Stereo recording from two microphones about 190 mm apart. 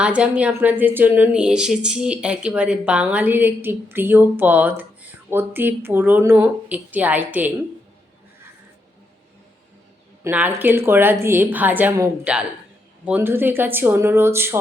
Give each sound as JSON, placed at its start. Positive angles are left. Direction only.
{"t": 0.0, "sound": "a woman's voice", "side_deg": -5}
{"t": 10.2, "sound": "a woman's voice", "side_deg": -10}